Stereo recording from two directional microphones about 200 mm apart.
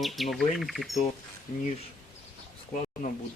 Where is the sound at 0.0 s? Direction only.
Centre (ahead or behind).